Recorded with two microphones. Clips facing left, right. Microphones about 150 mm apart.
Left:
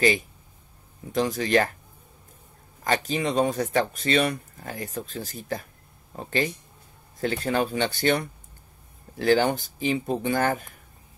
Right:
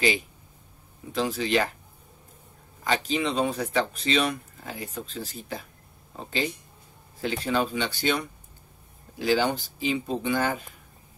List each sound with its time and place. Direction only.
1.1 s speech: 45° left (ahead or behind)
2.8 s speech: 50° left (ahead or behind)
6.1 s speech: 55° left (ahead or behind)